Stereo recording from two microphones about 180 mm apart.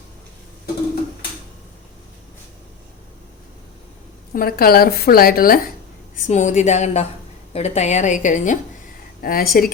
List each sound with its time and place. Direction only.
4.4 s a woman's voice: 55° left (ahead or behind)
6.2 s a woman's voice: 40° left (ahead or behind)
9.2 s speech: 55° left (ahead or behind)